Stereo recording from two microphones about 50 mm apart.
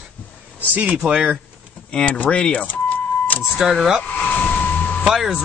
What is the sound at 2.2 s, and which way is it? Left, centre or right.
Speech, left.